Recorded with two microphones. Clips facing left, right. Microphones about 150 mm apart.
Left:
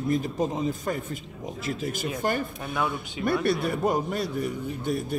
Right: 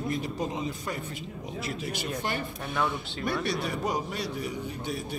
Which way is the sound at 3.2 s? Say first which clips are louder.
Left 5 dB; 55° left (ahead or behind).